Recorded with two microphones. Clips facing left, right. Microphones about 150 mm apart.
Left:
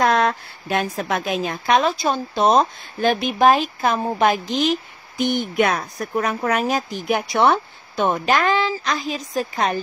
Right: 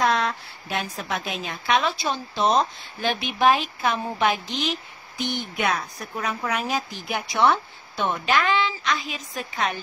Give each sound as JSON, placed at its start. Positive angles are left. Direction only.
{"t": 0.0, "sound": "a woman's voice", "side_deg": 50}